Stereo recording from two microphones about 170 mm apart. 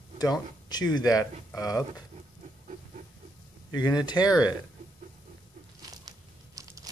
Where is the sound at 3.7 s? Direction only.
25° left (ahead or behind).